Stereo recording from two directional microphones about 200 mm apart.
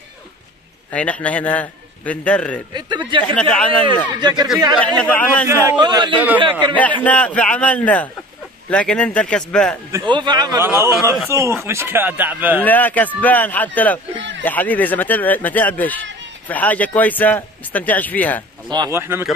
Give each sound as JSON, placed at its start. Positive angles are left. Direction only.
{"t": 0.9, "sound": "speech", "side_deg": 5}
{"t": 4.2, "sound": "a man's voice", "side_deg": -20}
{"t": 4.7, "sound": "speech", "side_deg": 5}
{"t": 5.5, "sound": "a man's voice", "side_deg": -15}
{"t": 6.1, "sound": "a man's voice", "side_deg": -10}
{"t": 6.5, "sound": "speech", "side_deg": 10}
{"t": 9.9, "sound": "a man's voice", "side_deg": -20}
{"t": 12.6, "sound": "speech", "side_deg": 10}
{"t": 18.7, "sound": "a man's voice", "side_deg": -15}